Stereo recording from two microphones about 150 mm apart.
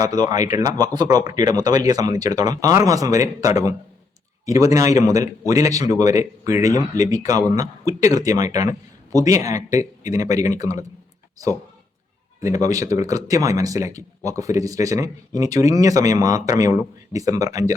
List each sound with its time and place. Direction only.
0.0 s speech: 25° right (ahead or behind)